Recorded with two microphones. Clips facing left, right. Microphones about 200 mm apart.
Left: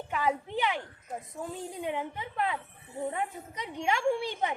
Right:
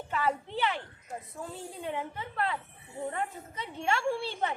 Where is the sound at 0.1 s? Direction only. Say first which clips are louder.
Left 1 dB; 15° left (ahead or behind).